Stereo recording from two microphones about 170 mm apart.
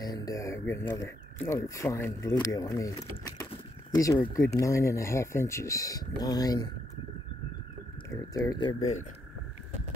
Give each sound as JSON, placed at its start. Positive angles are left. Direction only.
{"t": 0.0, "sound": "speech", "side_deg": 20}
{"t": 3.4, "sound": "a sound", "side_deg": 25}
{"t": 4.6, "sound": "speech", "side_deg": 15}
{"t": 8.1, "sound": "speech", "side_deg": 20}
{"t": 8.7, "sound": "speech", "side_deg": 45}